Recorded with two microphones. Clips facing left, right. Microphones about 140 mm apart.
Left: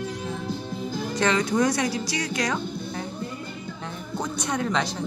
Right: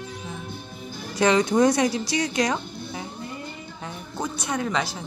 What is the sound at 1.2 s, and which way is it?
Speech, 20° right (ahead or behind).